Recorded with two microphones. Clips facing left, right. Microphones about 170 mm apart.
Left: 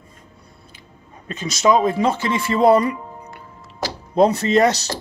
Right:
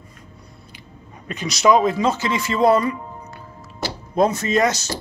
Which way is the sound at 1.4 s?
25° left (ahead or behind).